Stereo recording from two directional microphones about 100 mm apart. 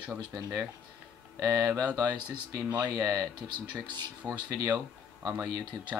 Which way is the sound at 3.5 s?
50° right (ahead or behind).